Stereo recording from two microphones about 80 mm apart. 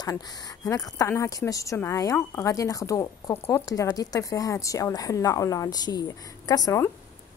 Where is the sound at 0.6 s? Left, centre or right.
Left.